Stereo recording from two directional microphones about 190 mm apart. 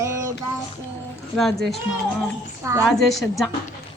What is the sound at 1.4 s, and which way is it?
Speech, centre (ahead or behind).